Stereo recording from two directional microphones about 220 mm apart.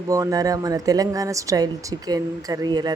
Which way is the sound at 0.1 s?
15° right (ahead or behind).